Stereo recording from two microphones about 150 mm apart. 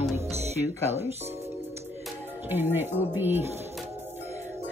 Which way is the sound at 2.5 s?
15° right (ahead or behind).